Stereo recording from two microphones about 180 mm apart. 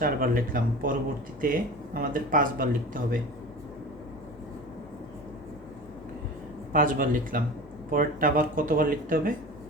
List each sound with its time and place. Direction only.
0.0 s speech: 50° right (ahead or behind)
6.7 s speech: 50° right (ahead or behind)